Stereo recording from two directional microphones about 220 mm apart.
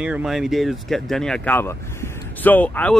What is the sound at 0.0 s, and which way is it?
Speech, 5° right (ahead or behind).